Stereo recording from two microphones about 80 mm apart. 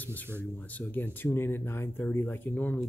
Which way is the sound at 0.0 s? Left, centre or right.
Left.